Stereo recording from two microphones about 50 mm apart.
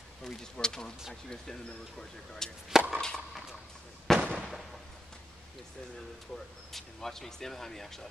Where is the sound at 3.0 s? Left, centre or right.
Centre.